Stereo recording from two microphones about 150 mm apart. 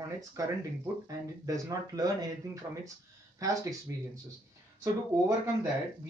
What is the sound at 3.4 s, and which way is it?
Speech, 20° right (ahead or behind).